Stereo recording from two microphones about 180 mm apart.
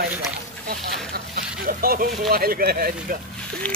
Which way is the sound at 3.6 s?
5° left (ahead or behind).